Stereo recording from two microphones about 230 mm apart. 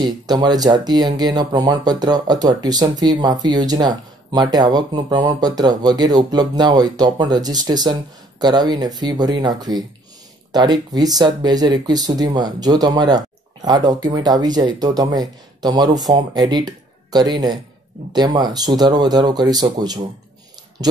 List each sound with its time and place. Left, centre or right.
0.0 s speech: centre